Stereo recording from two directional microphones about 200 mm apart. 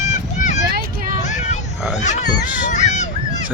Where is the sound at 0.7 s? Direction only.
50° right (ahead or behind).